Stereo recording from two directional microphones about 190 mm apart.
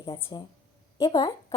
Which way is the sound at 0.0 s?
25° left (ahead or behind).